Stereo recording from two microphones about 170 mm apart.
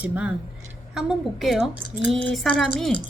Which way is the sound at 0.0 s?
5° right (ahead or behind).